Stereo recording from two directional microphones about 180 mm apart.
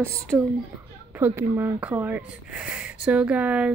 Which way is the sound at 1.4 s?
10° right (ahead or behind).